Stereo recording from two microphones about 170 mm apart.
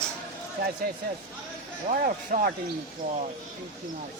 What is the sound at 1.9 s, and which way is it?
Speech, 50° right (ahead or behind).